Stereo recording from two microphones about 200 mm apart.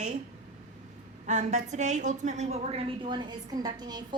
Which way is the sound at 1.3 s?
35° right (ahead or behind).